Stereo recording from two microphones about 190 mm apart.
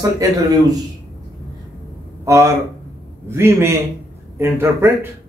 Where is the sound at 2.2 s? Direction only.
15° right (ahead or behind).